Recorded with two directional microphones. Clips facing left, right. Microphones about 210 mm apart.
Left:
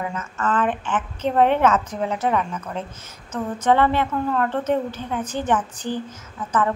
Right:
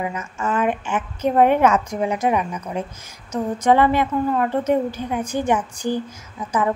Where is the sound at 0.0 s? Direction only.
10° right (ahead or behind).